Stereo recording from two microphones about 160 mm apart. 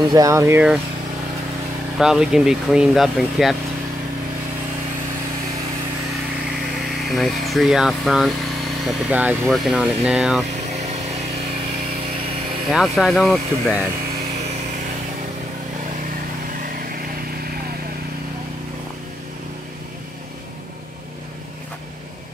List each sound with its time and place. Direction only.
0.1 s speech: 20° right (ahead or behind)
2.0 s speech: 5° right (ahead or behind)
7.1 s speech: centre (ahead or behind)
12.7 s speech: centre (ahead or behind)
16.6 s vehicle: 65° right (ahead or behind)